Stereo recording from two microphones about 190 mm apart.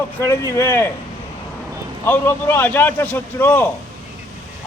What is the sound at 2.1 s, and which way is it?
Speech, 10° left (ahead or behind).